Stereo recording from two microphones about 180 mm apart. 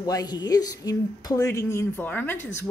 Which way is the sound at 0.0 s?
20° left (ahead or behind).